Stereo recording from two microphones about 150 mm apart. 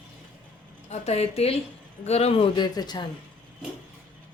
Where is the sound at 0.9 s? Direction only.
45° left (ahead or behind); by 3.1 s 30° left (ahead or behind).